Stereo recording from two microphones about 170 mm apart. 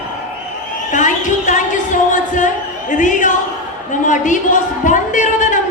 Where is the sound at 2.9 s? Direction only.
50° left (ahead or behind).